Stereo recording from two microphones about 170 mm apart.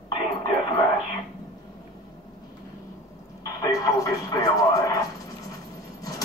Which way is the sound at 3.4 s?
20° left (ahead or behind).